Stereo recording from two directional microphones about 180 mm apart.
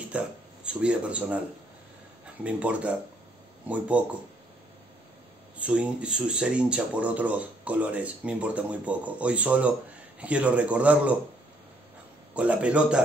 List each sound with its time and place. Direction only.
0.1 s speech: 5° right (ahead or behind)
2.4 s speech: 5° right (ahead or behind)
5.6 s speech: 5° right (ahead or behind)
12.4 s speech: 5° right (ahead or behind)